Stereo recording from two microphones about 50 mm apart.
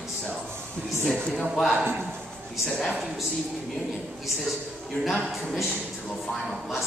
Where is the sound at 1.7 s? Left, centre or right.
Right.